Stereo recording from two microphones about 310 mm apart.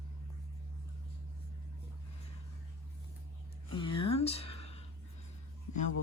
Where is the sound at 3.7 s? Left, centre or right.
Centre.